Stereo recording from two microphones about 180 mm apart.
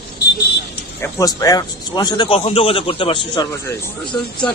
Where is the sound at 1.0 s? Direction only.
20° left (ahead or behind).